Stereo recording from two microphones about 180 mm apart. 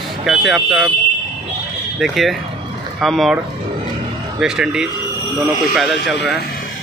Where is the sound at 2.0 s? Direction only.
Centre (ahead or behind).